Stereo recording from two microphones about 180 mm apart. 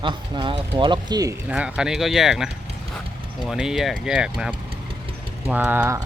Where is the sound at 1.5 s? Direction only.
5° right (ahead or behind).